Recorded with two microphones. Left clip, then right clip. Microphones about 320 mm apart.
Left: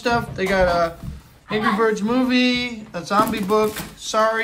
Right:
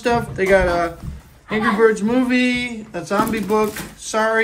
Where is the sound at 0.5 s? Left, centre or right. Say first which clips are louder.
Right 2 dB; centre.